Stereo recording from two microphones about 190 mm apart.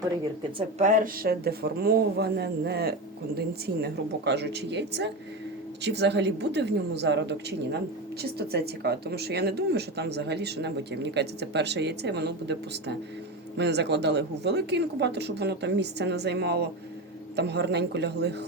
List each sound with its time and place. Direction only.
0.8 s speech: 45° right (ahead or behind); by 18.4 s 60° right (ahead or behind)